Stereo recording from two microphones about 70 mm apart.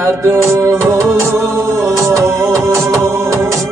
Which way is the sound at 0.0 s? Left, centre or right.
Right.